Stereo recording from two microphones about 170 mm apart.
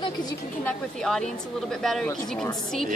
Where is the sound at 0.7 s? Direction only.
5° left (ahead or behind).